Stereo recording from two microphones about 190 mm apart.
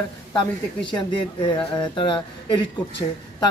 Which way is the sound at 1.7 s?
25° left (ahead or behind).